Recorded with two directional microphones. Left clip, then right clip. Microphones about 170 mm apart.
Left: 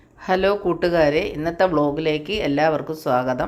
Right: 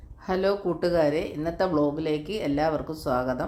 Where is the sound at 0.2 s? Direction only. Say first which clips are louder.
Left 6 dB; 20° left (ahead or behind).